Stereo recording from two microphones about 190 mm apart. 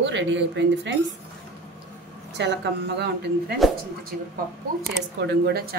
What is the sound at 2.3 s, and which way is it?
Speech, 65° right (ahead or behind).